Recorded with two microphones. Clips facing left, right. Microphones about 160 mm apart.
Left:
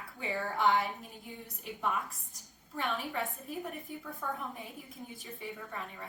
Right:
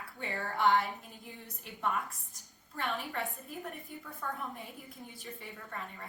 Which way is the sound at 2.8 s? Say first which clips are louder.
Left 1 dB; centre (ahead or behind).